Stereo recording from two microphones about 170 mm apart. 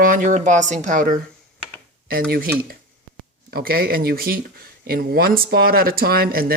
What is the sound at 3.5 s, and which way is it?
Speech, 65° right (ahead or behind).